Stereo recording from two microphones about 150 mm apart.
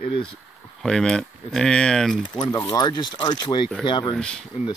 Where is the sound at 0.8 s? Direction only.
5° left (ahead or behind).